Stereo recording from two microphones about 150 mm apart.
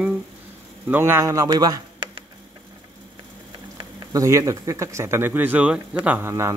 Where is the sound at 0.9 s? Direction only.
15° right (ahead or behind).